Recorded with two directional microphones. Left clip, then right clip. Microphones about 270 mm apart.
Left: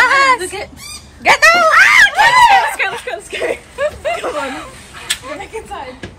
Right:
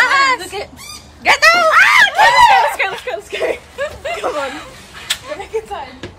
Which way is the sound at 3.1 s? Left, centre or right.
Right.